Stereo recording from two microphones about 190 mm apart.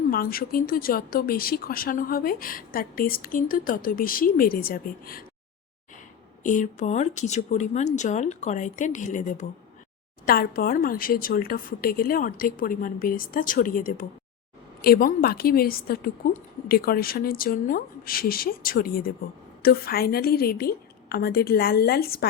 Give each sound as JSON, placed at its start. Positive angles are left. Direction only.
{"t": 0.1, "sound": "speech", "side_deg": 50}
{"t": 6.4, "sound": "speech", "side_deg": 40}